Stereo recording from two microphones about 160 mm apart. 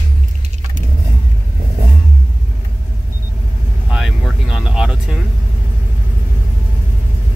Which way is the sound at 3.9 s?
5° right (ahead or behind).